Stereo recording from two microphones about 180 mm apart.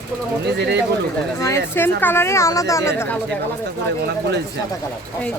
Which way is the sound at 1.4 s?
15° left (ahead or behind).